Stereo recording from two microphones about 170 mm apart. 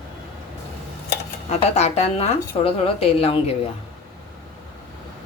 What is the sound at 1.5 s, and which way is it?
A woman's voice, 40° left (ahead or behind).